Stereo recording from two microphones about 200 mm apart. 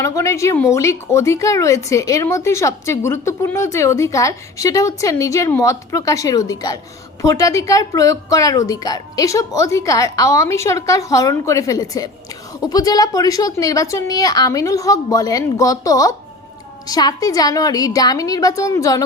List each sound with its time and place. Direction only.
0.0 s speech: 15° left (ahead or behind)